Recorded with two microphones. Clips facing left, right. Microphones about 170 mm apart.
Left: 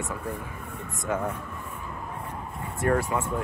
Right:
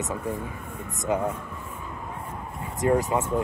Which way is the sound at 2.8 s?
20° right (ahead or behind).